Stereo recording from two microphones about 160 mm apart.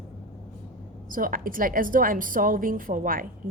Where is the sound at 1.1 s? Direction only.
60° right (ahead or behind).